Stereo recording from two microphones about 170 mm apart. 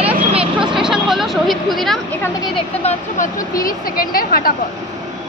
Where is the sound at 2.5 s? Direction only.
40° left (ahead or behind).